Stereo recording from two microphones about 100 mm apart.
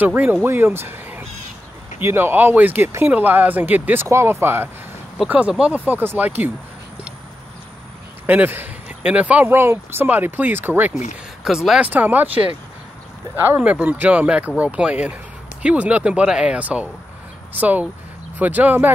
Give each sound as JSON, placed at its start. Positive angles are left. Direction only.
{"t": 0.0, "sound": "speech", "side_deg": -15}
{"t": 8.3, "sound": "speech", "side_deg": -20}
{"t": 11.4, "sound": "speech", "side_deg": -5}
{"t": 11.9, "sound": "speech", "side_deg": -20}
{"t": 13.6, "sound": "speech", "side_deg": -15}